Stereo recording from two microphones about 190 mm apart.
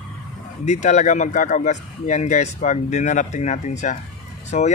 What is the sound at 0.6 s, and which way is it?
Speech, 40° left (ahead or behind).